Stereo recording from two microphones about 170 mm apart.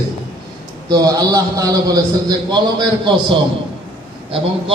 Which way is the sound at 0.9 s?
20° right (ahead or behind).